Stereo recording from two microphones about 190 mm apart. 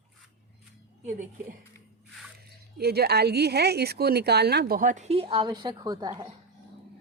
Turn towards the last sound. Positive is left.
turn(degrees=-20)  # may be behind; listen again after turning